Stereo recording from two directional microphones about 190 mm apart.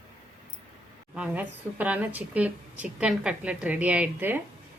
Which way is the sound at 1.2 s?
10° right (ahead or behind).